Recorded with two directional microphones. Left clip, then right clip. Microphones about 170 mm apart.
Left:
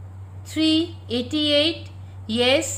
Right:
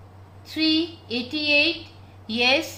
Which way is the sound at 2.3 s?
35° left (ahead or behind).